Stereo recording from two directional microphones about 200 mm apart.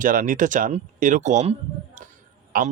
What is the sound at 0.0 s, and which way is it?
Speech, 40° right (ahead or behind).